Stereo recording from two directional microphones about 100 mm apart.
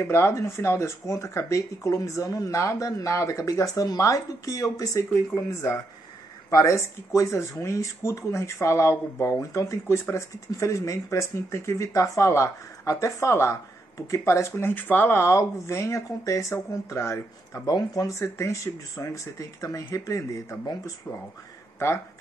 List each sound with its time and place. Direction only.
0.0 s speech: 25° left (ahead or behind)
21.7 s speech: 25° left (ahead or behind)